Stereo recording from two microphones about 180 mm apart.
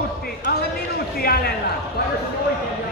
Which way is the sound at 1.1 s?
60° left (ahead or behind).